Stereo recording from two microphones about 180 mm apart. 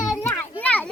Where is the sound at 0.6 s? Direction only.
10° left (ahead or behind).